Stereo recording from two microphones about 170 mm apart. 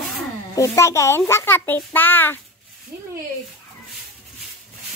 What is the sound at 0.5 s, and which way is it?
A child's voice, 15° left (ahead or behind).